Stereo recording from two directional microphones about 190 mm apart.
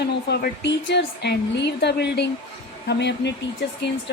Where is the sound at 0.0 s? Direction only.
60° left (ahead or behind).